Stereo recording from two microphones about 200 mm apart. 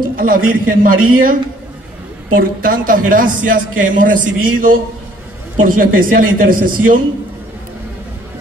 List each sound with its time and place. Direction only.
0.1 s a man's voice: 45° right (ahead or behind)
2.3 s a man's voice: 45° right (ahead or behind)